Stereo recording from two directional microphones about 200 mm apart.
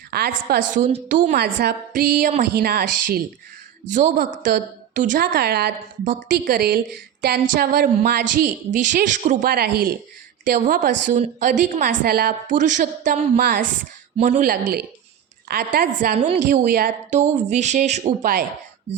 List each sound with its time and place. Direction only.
0.1 s a woman's voice: 50° right (ahead or behind)
16.1 s a woman's voice: 30° right (ahead or behind)
16.5 s a woman's voice: 45° right (ahead or behind)
17.2 s a woman's voice: 35° right (ahead or behind)